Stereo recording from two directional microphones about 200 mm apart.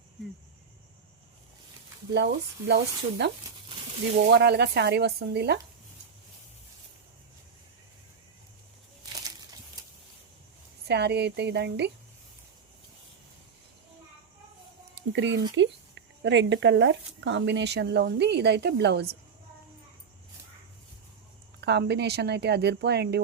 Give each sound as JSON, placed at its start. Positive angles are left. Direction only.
{"t": 2.1, "sound": "speech", "side_deg": -55}
{"t": 4.3, "sound": "speech", "side_deg": -55}
{"t": 10.8, "sound": "speech", "side_deg": -55}
{"t": 14.9, "sound": "speech", "side_deg": -65}
{"t": 21.6, "sound": "speech", "side_deg": -55}